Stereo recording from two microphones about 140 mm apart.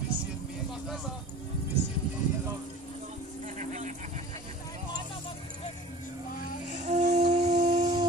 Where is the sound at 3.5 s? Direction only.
60° right (ahead or behind).